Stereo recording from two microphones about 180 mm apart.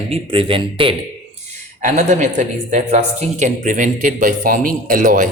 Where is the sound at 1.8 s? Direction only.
45° right (ahead or behind).